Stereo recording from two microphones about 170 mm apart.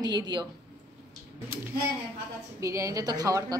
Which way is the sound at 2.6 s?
20° right (ahead or behind).